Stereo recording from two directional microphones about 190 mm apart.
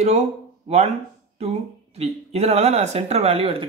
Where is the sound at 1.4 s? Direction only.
35° right (ahead or behind).